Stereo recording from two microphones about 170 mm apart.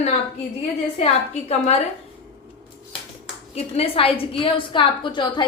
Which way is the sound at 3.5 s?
35° left (ahead or behind).